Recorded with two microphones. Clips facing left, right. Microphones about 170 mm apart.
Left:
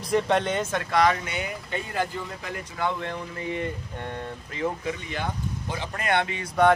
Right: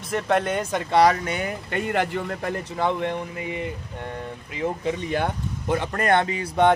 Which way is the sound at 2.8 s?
20° right (ahead or behind).